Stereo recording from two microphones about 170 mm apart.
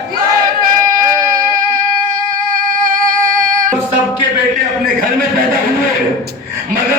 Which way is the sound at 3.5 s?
55° right (ahead or behind).